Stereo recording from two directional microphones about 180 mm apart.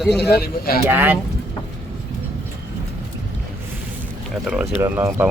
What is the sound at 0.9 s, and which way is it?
Speech, 10° right (ahead or behind).